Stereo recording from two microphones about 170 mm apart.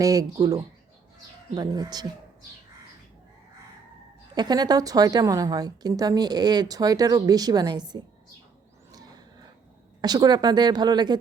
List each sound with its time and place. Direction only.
0.0 s a woman's voice: 20° right (ahead or behind)
4.4 s a woman's voice: 25° right (ahead or behind)
8.9 s a sound: 25° right (ahead or behind)
10.0 s a woman's voice: 25° right (ahead or behind)